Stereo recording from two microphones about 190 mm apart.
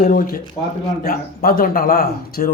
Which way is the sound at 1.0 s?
50° left (ahead or behind).